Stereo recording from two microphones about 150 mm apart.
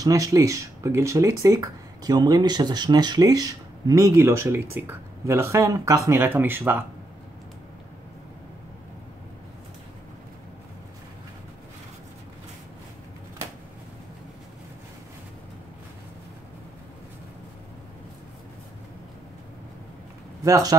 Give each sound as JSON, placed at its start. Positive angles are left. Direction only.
{"t": 0.0, "sound": "speech", "side_deg": -20}
{"t": 20.4, "sound": "speech", "side_deg": -20}